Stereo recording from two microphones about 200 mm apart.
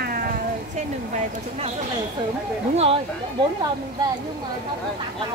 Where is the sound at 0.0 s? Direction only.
45° right (ahead or behind).